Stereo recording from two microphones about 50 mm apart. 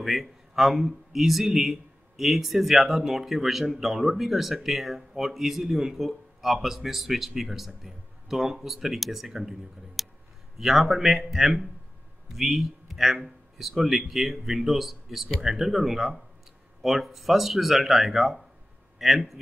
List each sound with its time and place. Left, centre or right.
0.0 s speech: centre